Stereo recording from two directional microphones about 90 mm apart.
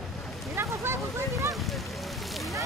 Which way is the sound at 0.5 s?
30° right (ahead or behind).